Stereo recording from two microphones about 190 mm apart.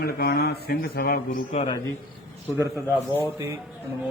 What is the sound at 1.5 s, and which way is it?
Speech, 25° left (ahead or behind).